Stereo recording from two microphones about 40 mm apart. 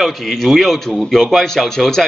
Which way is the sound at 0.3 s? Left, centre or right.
Centre.